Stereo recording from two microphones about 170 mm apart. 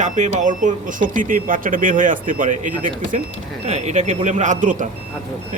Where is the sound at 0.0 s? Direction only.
45° right (ahead or behind).